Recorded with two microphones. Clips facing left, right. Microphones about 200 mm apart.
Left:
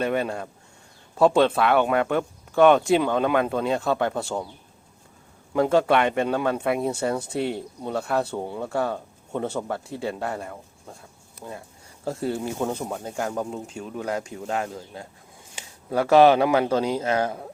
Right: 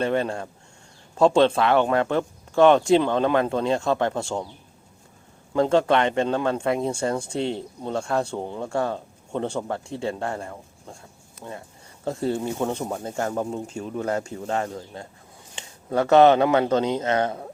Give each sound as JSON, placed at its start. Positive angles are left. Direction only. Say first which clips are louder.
{"t": 0.0, "sound": "speech", "louder": "right 1 dB", "side_deg": 5}
{"t": 5.5, "sound": "speech", "louder": "even", "side_deg": 5}
{"t": 7.3, "sound": "speech", "louder": "even", "side_deg": -25}
{"t": 7.9, "sound": "speech", "louder": "even", "side_deg": 5}